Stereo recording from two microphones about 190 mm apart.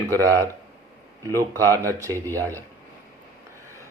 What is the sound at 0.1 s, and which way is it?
Speech, 15° right (ahead or behind).